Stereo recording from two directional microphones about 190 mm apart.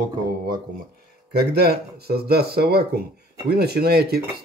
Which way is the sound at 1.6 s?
55° right (ahead or behind).